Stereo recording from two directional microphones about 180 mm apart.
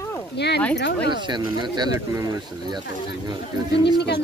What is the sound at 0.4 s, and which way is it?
Speech, 70° left (ahead or behind).